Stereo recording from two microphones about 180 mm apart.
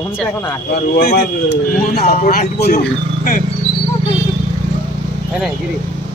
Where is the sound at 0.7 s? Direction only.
60° left (ahead or behind).